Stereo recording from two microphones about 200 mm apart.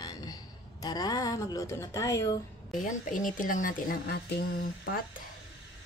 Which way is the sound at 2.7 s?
40° left (ahead or behind).